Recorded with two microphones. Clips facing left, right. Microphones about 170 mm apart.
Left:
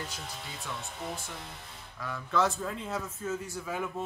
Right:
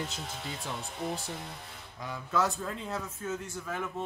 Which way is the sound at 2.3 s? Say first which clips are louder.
Left 1 dB; centre (ahead or behind).